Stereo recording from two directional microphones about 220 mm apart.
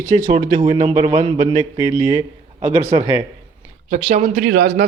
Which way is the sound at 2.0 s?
15° right (ahead or behind).